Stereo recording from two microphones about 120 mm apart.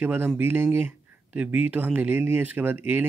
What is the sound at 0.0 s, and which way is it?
Speech, 15° right (ahead or behind).